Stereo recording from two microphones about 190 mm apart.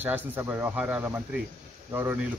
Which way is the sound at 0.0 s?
10° right (ahead or behind).